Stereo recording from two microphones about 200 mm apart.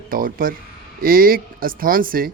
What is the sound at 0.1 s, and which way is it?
Speech, 45° right (ahead or behind).